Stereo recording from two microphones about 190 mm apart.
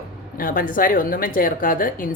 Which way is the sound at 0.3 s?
45° left (ahead or behind).